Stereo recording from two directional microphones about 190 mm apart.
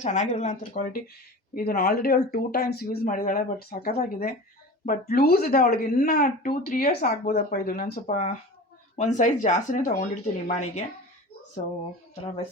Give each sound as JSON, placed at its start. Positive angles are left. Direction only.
{"t": 0.0, "sound": "speech", "side_deg": 40}
{"t": 1.5, "sound": "speech", "side_deg": 55}
{"t": 8.0, "sound": "speech", "side_deg": 40}